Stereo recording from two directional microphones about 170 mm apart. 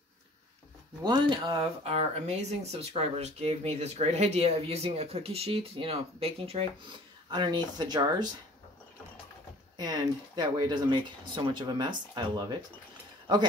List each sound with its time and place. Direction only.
1.0 s speech: 25° right (ahead or behind)
9.8 s speech: 25° right (ahead or behind)